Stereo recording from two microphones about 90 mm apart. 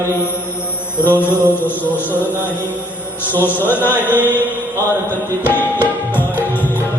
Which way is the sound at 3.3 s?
20° right (ahead or behind).